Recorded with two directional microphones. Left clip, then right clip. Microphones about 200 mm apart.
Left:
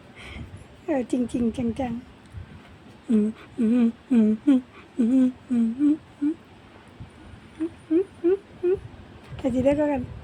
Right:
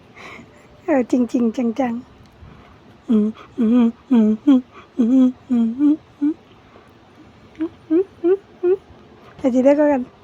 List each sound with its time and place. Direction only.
0.2 s a sound: 25° right (ahead or behind)
0.9 s speech: 25° right (ahead or behind)
3.1 s humming: 15° right (ahead or behind)
7.9 s humming: 15° right (ahead or behind)
9.4 s speech: 20° right (ahead or behind)